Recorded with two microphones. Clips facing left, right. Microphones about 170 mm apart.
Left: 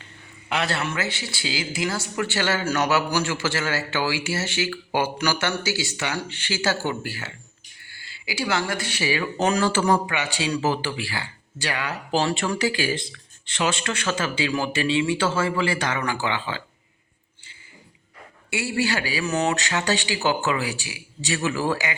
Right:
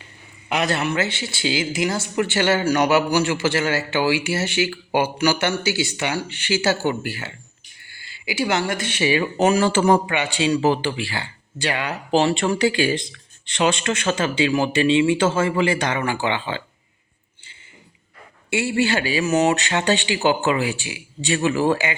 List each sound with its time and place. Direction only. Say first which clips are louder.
0.0 s a man's voice: even; 15° right (ahead or behind)
18.5 s speech: right 4 dB; 25° right (ahead or behind)